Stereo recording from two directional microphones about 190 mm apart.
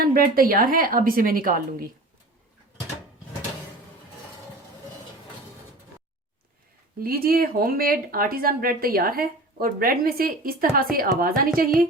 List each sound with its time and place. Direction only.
0.0 s speech: 50° right (ahead or behind)
7.0 s speech: 50° right (ahead or behind)